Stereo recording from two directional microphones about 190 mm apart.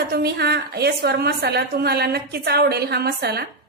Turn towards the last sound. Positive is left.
turn(degrees=-60)  # may be behind; listen again after turning